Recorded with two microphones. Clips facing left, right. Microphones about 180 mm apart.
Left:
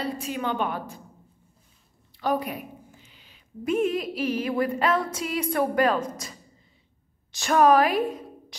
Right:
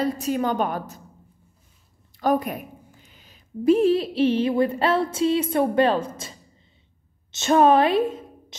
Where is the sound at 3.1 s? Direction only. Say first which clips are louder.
Right 13 dB; 45° right (ahead or behind).